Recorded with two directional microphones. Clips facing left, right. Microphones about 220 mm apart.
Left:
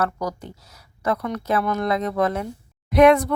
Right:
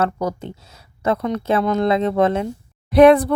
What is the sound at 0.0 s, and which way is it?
Speech, 25° right (ahead or behind).